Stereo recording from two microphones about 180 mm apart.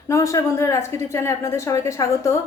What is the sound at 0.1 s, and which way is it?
A woman's voice, 15° left (ahead or behind).